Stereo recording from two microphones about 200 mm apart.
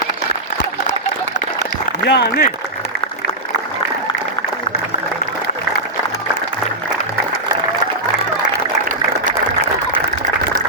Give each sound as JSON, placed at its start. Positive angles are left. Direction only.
{"t": 2.0, "sound": "speech", "side_deg": 60}